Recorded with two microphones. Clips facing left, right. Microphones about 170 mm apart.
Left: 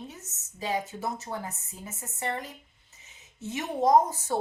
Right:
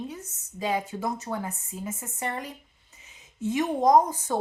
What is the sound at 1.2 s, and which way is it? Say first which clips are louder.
Speech: right 4 dB; 15° right (ahead or behind).